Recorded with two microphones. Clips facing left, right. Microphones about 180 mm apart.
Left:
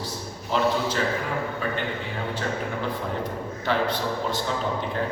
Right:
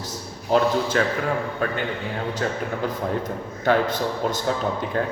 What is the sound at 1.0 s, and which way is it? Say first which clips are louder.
Speech: right 4 dB; 65° right (ahead or behind).